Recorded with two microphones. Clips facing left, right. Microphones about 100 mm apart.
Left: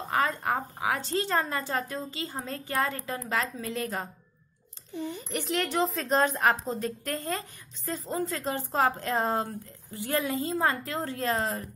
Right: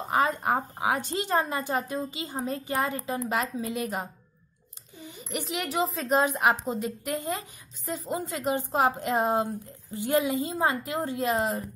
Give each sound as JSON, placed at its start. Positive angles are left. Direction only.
{"t": 0.0, "sound": "speech", "side_deg": -20}
{"t": 5.6, "sound": "speech", "side_deg": -5}